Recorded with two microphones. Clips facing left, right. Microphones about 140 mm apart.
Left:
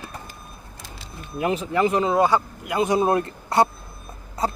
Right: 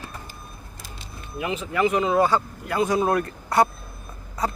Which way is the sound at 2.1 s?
15° left (ahead or behind).